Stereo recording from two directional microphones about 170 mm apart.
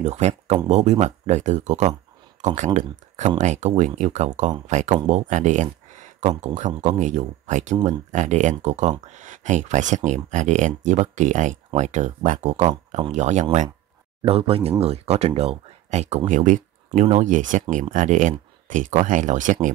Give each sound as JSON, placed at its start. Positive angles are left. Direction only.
{"t": 0.0, "sound": "speech", "side_deg": -40}
{"t": 14.2, "sound": "speech", "side_deg": -35}